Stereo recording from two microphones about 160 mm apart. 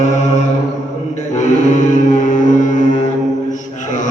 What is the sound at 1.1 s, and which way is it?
Mantra, 50° left (ahead or behind).